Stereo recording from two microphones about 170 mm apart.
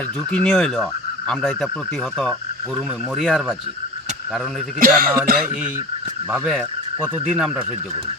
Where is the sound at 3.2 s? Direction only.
5° right (ahead or behind).